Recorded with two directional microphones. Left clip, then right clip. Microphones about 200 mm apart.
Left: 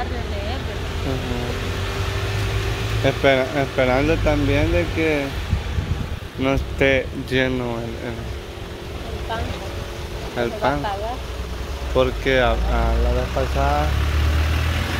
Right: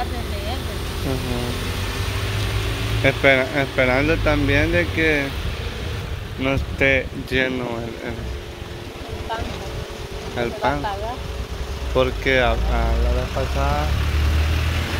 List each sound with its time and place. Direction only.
3.0 s speech: centre (ahead or behind)
6.4 s speech: 15° left (ahead or behind)
10.3 s speech: 5° left (ahead or behind)
11.9 s speech: 5° left (ahead or behind)
13.6 s speech: 20° left (ahead or behind)